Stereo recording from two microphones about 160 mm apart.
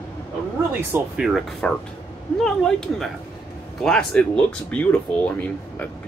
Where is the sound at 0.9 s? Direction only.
5° right (ahead or behind).